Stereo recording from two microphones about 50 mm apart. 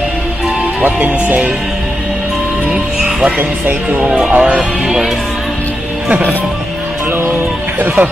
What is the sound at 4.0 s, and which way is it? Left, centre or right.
Speech, centre.